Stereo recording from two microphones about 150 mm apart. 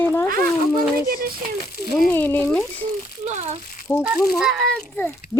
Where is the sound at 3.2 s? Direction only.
50° right (ahead or behind).